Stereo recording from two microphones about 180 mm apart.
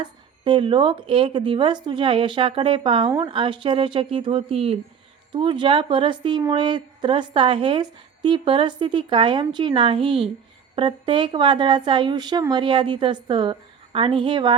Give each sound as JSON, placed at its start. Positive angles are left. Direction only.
{"t": 0.0, "sound": "speech", "side_deg": -25}